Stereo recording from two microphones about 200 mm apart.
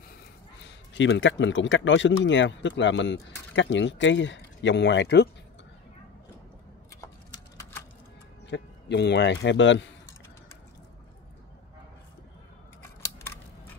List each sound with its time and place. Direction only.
0.9 s speech: 65° left (ahead or behind)
7.0 s a sound: 20° left (ahead or behind)
8.5 s speech: 60° left (ahead or behind)